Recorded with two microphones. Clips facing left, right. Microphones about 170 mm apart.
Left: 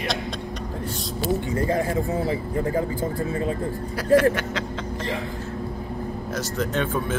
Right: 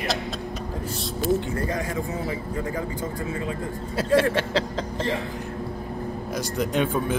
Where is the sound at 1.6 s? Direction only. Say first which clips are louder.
Left 4 dB; 30° left (ahead or behind).